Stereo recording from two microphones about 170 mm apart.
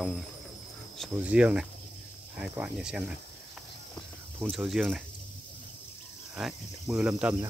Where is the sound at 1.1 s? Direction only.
10° right (ahead or behind).